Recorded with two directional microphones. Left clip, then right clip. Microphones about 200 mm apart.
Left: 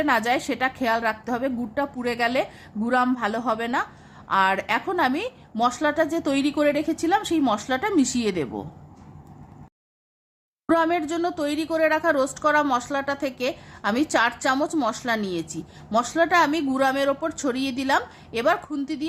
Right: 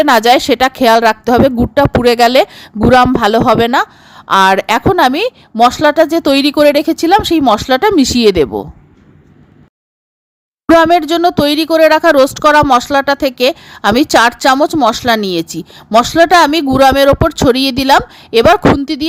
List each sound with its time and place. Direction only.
0.0 s a woman's voice: 50° right (ahead or behind)
10.7 s a woman's voice: 45° right (ahead or behind)